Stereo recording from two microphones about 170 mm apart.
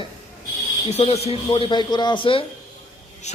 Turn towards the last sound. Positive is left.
turn(degrees=40)  # may be behind; listen again after turning